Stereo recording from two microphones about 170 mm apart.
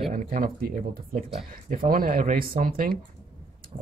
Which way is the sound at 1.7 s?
55° right (ahead or behind).